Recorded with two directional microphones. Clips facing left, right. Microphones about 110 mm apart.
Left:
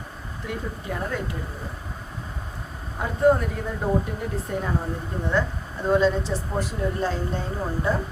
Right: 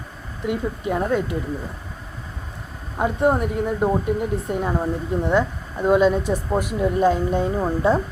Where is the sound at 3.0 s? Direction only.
25° right (ahead or behind).